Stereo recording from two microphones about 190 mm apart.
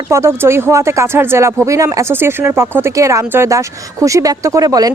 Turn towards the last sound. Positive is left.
turn(degrees=-20)  # may be behind; listen again after turning